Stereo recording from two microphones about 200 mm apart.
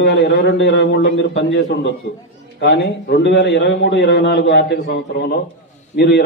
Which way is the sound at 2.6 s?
55° left (ahead or behind).